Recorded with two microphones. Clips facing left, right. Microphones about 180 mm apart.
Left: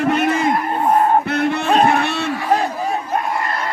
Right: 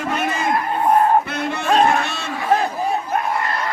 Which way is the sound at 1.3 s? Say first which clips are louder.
Left 3 dB; 60° left (ahead or behind).